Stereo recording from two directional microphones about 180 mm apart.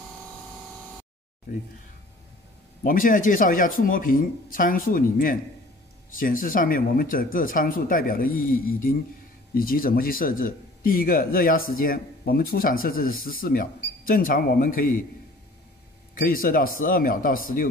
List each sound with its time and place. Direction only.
2.8 s speech: 50° left (ahead or behind)
16.2 s speech: 50° left (ahead or behind)